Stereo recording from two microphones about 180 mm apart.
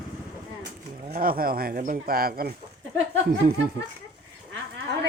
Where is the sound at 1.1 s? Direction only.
55° right (ahead or behind).